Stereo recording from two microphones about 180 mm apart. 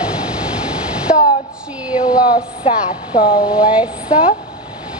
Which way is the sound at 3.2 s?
30° left (ahead or behind).